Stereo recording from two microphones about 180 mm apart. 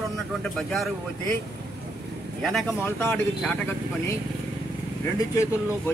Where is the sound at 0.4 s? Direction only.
Centre (ahead or behind).